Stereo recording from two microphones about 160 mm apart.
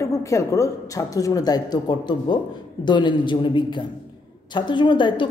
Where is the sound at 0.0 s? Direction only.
20° left (ahead or behind).